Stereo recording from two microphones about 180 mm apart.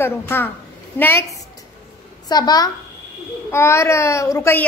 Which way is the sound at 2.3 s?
20° left (ahead or behind).